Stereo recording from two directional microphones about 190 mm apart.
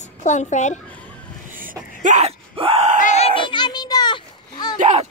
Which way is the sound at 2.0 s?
35° right (ahead or behind).